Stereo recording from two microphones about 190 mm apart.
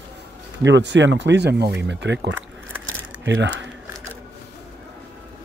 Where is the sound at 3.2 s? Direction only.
70° right (ahead or behind).